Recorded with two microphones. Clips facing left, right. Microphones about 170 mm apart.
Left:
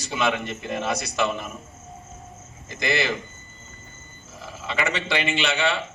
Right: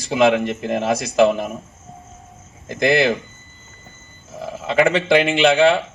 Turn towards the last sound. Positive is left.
turn(degrees=-50)  # may be behind; listen again after turning